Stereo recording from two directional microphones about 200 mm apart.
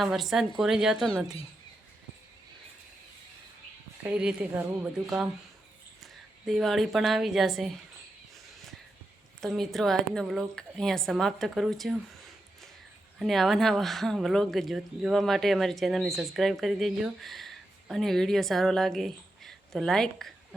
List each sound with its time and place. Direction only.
0.0 s speech: centre (ahead or behind)
4.0 s a woman's voice: 5° right (ahead or behind)
9.4 s speech: centre (ahead or behind)
13.1 s speech: centre (ahead or behind)